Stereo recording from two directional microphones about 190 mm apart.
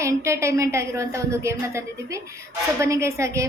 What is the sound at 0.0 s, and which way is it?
A woman's voice, 15° right (ahead or behind).